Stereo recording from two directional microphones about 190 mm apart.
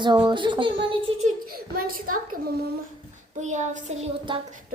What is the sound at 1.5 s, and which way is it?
Speech, 50° right (ahead or behind).